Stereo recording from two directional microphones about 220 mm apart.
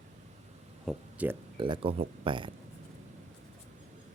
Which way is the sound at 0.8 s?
5° right (ahead or behind).